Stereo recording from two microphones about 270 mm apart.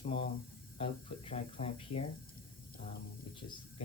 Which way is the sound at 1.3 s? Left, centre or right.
Left.